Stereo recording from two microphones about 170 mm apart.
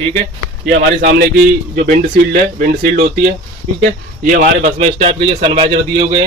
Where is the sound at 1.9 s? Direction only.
50° right (ahead or behind).